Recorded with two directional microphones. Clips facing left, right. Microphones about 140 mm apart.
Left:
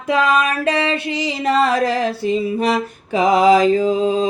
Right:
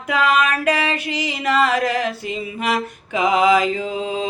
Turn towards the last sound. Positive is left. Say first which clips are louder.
# left 7 dB
turn(degrees=40)  # may be behind; listen again after turning